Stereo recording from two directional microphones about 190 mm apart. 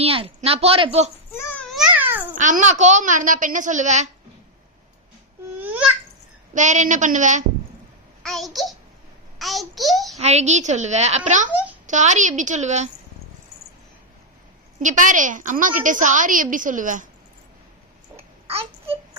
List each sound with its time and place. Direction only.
0.0 s a woman's voice: 30° right (ahead or behind)
1.3 s a sound: 10° left (ahead or behind)
1.7 s babbling: 5° right (ahead or behind)
2.3 s a woman's voice: 40° right (ahead or behind)
5.5 s babbling: 10° right (ahead or behind)
6.5 s a woman's voice: 40° right (ahead or behind)
8.2 s a child's voice: centre (ahead or behind)
10.2 s a woman's voice: 35° right (ahead or behind)
11.4 s a child's voice: 5° right (ahead or behind)
11.9 s a woman's voice: 40° right (ahead or behind)
14.8 s a woman's voice: 40° right (ahead or behind)
18.4 s babbling: 30° right (ahead or behind)